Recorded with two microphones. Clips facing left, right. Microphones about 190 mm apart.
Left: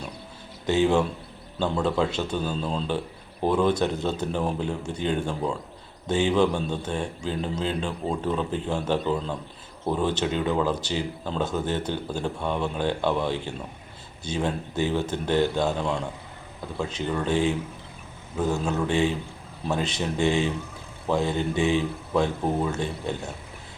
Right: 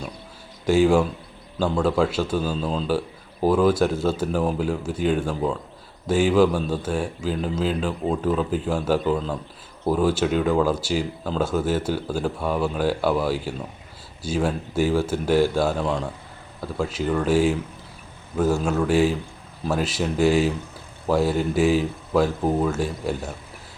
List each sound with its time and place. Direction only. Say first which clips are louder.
0.7 s a man's voice: right 4 dB; 10° right (ahead or behind)
18.6 s a man's voice: right 3 dB; 5° left (ahead or behind)
18.9 s a man's voice: right 4 dB; 5° right (ahead or behind)